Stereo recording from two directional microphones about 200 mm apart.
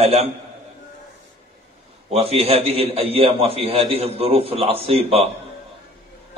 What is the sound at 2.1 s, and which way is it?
A man's voice, 30° right (ahead or behind).